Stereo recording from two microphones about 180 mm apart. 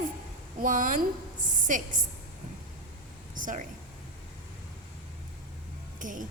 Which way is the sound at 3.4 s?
45° right (ahead or behind).